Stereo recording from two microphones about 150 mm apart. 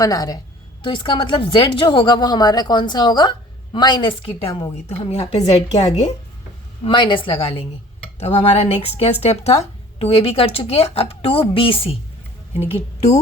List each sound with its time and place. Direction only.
0.0 s a woman's voice: 25° left (ahead or behind); by 6.1 s 45° left (ahead or behind)
6.8 s a woman's voice: 35° left (ahead or behind)